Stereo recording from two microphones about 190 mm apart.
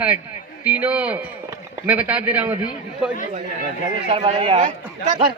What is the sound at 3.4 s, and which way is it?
Speech, 50° right (ahead or behind).